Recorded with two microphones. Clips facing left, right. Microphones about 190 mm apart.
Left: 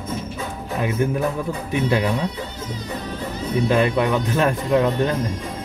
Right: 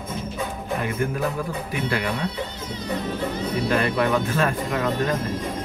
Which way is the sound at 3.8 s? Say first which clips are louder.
Left 2 dB; 20° left (ahead or behind).